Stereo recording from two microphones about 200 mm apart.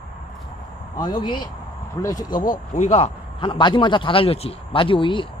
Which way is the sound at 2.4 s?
40° left (ahead or behind).